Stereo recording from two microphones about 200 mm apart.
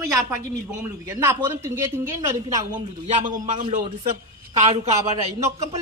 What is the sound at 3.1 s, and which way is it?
A man's voice, 40° right (ahead or behind).